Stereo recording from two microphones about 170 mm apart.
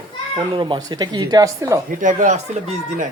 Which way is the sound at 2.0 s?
50° right (ahead or behind).